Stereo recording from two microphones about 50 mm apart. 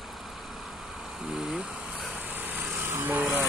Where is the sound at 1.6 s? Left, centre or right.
Right.